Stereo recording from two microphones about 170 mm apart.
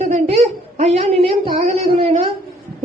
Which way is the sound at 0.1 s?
40° right (ahead or behind).